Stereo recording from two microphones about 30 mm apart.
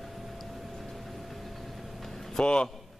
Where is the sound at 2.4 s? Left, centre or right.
Left.